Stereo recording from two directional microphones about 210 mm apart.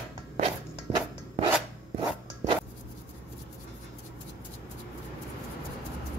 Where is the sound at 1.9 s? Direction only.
25° right (ahead or behind).